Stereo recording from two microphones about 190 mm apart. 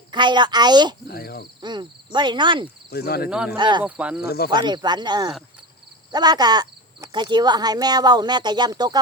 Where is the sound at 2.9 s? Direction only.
55° left (ahead or behind).